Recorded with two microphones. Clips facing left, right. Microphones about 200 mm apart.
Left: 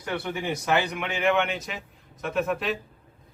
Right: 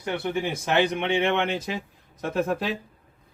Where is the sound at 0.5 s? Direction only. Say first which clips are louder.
Right 1 dB; 25° right (ahead or behind).